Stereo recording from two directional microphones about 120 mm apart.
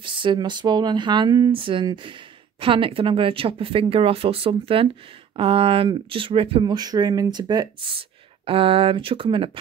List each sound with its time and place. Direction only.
0.0 s speech: 45° right (ahead or behind)
8.5 s speech: 50° right (ahead or behind)